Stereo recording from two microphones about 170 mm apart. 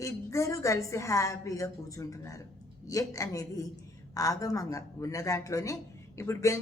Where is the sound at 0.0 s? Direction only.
20° left (ahead or behind).